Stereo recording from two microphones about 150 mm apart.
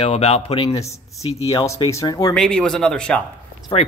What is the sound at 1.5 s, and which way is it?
Speech, 25° left (ahead or behind).